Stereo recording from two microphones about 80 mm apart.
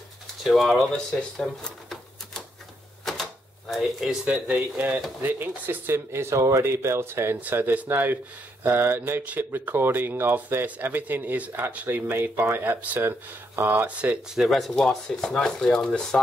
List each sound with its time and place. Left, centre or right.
0.4 s speech: centre; by 13.9 s right
14.3 s speech: centre